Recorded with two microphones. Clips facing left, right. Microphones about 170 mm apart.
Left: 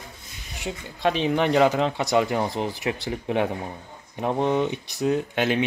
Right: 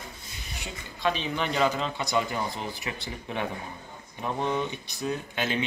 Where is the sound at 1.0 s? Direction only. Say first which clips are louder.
Left 7 dB; 70° left (ahead or behind).